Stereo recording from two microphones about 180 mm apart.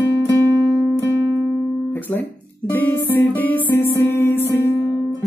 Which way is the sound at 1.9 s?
10° left (ahead or behind).